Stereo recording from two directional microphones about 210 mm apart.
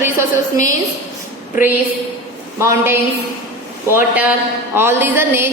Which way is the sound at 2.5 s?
15° right (ahead or behind).